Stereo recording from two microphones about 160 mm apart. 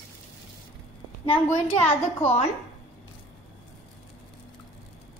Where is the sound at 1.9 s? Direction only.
45° left (ahead or behind).